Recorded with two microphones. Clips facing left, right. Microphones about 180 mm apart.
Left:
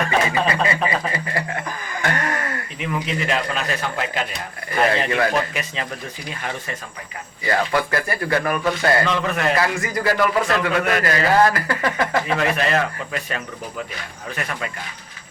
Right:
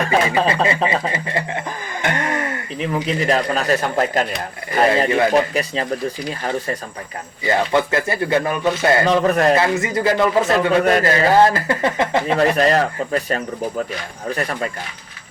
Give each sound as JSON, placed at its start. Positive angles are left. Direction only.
{"t": 0.0, "sound": "speech", "side_deg": -30}
{"t": 2.7, "sound": "speech", "side_deg": -35}
{"t": 4.7, "sound": "a man's voice", "side_deg": -30}
{"t": 7.4, "sound": "a man's voice", "side_deg": -25}
{"t": 9.0, "sound": "speech", "side_deg": -40}
{"t": 9.6, "sound": "a man's voice", "side_deg": -25}
{"t": 12.4, "sound": "speech", "side_deg": -35}